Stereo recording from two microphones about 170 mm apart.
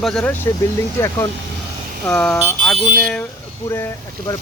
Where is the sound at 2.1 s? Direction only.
5° left (ahead or behind).